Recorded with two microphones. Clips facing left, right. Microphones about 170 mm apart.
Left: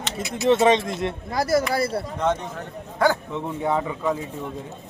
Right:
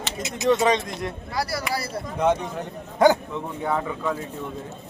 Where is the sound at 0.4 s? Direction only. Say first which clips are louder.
Left 3 dB; 25° left (ahead or behind).